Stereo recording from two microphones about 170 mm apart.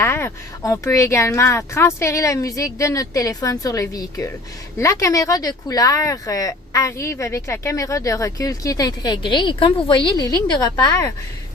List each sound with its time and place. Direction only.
0.0 s speech: 15° left (ahead or behind)